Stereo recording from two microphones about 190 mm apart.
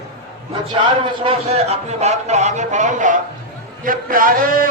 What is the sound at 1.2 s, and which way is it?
A man's voice, 30° right (ahead or behind).